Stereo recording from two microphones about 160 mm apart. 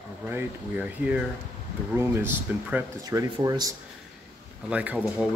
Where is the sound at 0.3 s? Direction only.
10° right (ahead or behind).